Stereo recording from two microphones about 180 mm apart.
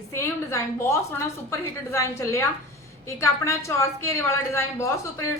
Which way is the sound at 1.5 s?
15° left (ahead or behind).